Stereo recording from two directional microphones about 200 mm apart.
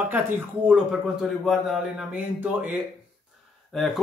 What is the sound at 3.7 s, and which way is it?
Speech, centre (ahead or behind).